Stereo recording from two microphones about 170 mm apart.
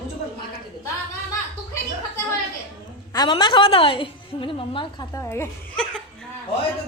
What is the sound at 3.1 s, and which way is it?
A woman's voice, 25° left (ahead or behind).